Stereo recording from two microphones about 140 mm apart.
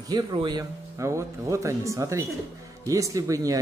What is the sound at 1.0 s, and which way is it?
Speech, 20° right (ahead or behind).